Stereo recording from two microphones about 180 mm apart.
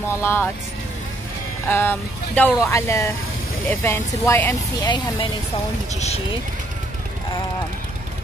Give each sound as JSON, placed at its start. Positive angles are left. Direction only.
{"t": 0.2, "sound": "speech", "side_deg": 15}
{"t": 1.7, "sound": "speech", "side_deg": 10}
{"t": 4.8, "sound": "speech", "side_deg": 25}
{"t": 5.9, "sound": "speech", "side_deg": 35}